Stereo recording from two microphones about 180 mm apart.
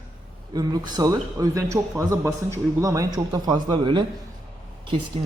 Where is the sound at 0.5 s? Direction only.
20° right (ahead or behind).